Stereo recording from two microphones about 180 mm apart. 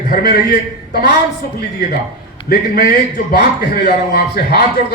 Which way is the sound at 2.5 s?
55° left (ahead or behind).